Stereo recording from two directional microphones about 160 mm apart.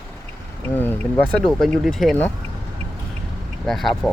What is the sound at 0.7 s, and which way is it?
Speech, 10° left (ahead or behind).